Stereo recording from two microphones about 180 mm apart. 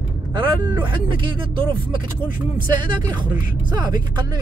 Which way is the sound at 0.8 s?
25° right (ahead or behind).